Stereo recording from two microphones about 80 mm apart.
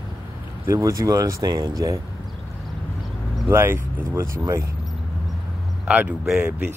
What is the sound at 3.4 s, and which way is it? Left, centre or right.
Speech, right.